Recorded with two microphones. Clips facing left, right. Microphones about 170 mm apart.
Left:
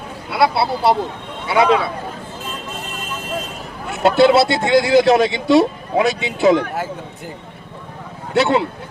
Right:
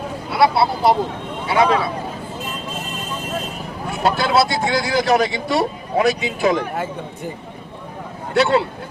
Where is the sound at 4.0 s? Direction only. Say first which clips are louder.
Left 5 dB; 25° left (ahead or behind).